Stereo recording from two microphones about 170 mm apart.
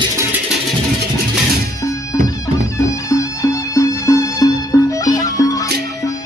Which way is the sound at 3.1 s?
20° left (ahead or behind).